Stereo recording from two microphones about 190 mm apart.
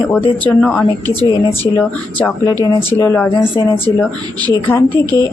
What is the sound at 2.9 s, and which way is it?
Speech, 15° left (ahead or behind).